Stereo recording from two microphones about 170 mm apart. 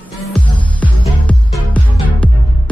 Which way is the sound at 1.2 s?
10° left (ahead or behind).